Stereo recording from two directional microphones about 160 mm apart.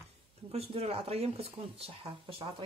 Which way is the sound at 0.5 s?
40° right (ahead or behind).